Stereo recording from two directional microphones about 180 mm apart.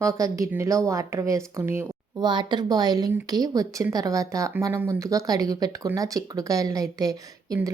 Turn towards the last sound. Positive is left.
turn(degrees=-20)  # may be behind; listen again after turning